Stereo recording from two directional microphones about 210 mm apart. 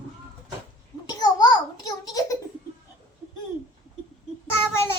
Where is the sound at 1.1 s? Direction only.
20° left (ahead or behind).